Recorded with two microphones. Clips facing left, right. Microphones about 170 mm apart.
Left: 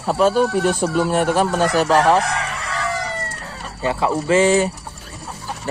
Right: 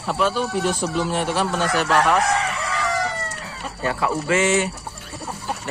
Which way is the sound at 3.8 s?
25° left (ahead or behind).